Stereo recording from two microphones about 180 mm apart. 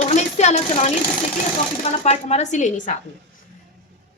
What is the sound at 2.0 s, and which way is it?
Speech, 35° left (ahead or behind).